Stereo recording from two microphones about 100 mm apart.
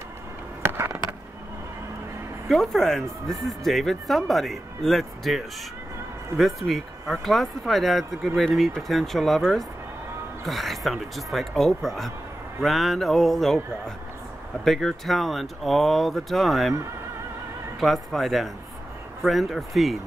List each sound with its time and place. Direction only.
0.6 s a sound: 25° right (ahead or behind)
2.4 s speech: centre (ahead or behind)
14.6 s speech: 5° left (ahead or behind)
17.7 s speech: centre (ahead or behind)